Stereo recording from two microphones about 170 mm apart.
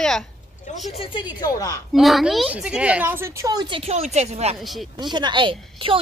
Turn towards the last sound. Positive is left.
turn(degrees=-30)  # may be behind; listen again after turning